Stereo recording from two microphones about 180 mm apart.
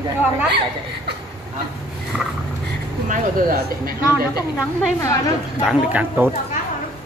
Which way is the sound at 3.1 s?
55° right (ahead or behind).